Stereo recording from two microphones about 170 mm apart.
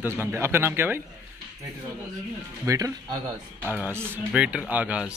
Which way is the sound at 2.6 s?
20° right (ahead or behind).